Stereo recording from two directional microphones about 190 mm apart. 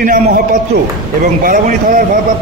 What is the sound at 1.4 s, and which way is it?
Speech, 45° right (ahead or behind).